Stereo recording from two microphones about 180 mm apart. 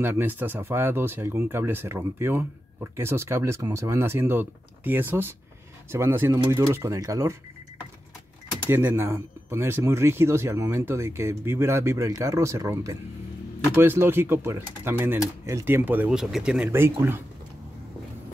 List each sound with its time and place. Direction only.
0.0 s speech: 10° right (ahead or behind)
8.6 s speech: 10° right (ahead or behind)